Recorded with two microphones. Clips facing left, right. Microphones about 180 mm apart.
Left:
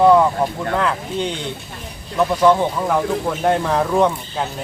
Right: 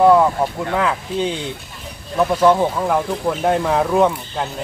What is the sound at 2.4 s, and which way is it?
Speech, 5° right (ahead or behind).